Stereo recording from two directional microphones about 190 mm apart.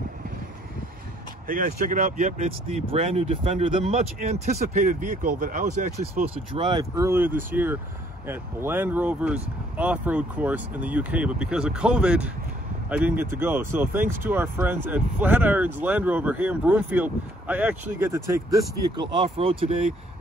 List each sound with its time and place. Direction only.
1.7 s speech: 40° right (ahead or behind); by 18.4 s 15° right (ahead or behind)
18.9 s speech: 30° right (ahead or behind)